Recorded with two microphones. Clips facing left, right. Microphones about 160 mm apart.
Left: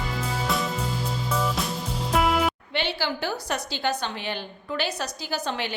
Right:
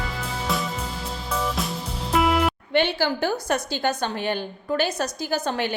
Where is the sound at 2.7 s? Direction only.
50° right (ahead or behind).